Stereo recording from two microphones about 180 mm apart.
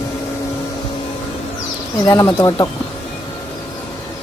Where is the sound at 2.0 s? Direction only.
20° left (ahead or behind).